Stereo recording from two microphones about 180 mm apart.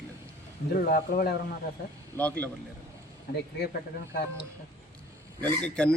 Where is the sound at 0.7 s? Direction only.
55° left (ahead or behind).